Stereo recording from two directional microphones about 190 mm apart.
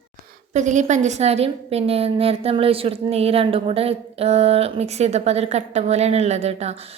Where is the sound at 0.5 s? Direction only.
40° right (ahead or behind).